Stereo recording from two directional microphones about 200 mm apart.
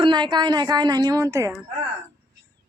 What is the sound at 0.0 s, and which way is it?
A woman's voice, 25° right (ahead or behind).